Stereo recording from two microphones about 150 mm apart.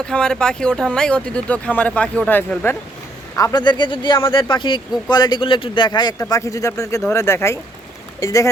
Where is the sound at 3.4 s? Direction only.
25° left (ahead or behind).